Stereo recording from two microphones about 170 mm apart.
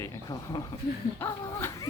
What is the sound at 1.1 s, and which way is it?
Speech, 15° left (ahead or behind).